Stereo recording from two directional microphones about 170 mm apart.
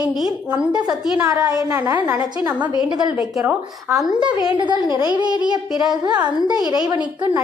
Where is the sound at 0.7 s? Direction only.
25° right (ahead or behind).